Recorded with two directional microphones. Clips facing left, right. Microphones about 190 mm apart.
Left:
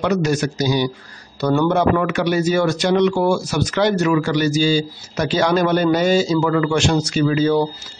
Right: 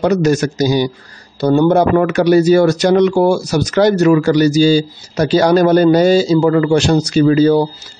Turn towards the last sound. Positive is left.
turn(degrees=-35)  # may be behind; listen again after turning